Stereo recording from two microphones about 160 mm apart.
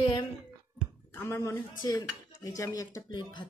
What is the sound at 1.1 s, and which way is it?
Speech, 15° left (ahead or behind).